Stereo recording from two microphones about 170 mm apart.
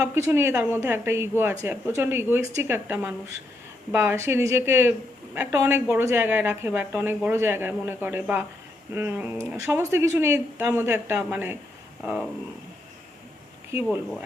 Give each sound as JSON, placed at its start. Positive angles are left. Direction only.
{"t": 0.0, "sound": "a woman's voice", "side_deg": -15}
{"t": 13.7, "sound": "a woman's voice", "side_deg": -15}